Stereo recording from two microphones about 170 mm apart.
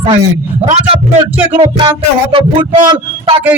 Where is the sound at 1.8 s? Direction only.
30° right (ahead or behind).